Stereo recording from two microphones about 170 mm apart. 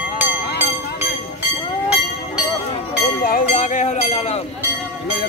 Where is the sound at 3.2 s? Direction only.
50° left (ahead or behind).